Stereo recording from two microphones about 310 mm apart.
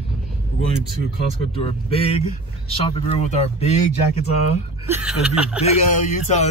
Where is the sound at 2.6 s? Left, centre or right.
Centre.